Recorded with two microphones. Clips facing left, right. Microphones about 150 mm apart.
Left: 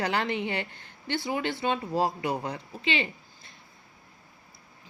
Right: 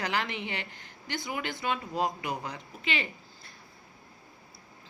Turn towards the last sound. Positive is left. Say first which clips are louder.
# left 4 dB
turn(degrees=30)  # may be behind; listen again after turning